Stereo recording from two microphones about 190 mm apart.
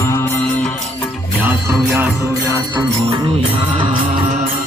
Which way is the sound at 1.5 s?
10° right (ahead or behind).